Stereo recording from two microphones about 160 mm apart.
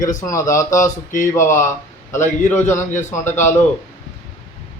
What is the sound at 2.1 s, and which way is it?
A man's voice, 15° left (ahead or behind).